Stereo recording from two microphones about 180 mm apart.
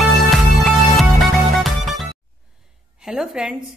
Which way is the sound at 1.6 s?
Centre (ahead or behind).